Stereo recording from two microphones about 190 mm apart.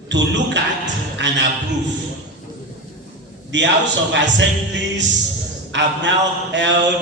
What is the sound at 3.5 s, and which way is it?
A man's voice, 70° right (ahead or behind).